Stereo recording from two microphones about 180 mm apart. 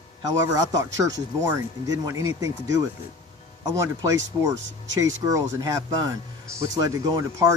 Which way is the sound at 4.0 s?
15° right (ahead or behind).